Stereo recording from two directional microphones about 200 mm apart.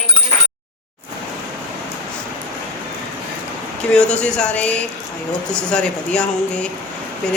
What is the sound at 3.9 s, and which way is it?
Speech, 5° left (ahead or behind).